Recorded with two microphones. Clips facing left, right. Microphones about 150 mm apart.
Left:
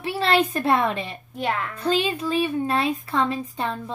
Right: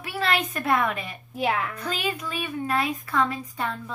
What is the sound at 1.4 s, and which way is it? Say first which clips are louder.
Speech: right 1 dB; 5° right (ahead or behind).